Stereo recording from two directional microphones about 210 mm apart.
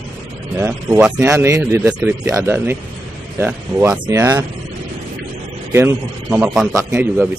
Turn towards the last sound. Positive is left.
turn(degrees=-10)  # may be behind; listen again after turning